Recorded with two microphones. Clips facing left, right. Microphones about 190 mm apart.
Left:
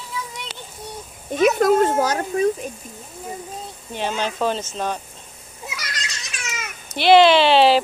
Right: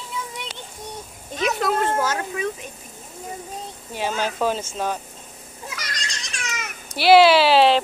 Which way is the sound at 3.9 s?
5° right (ahead or behind).